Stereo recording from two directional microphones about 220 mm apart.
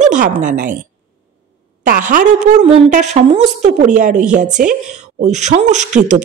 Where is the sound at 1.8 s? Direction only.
35° right (ahead or behind).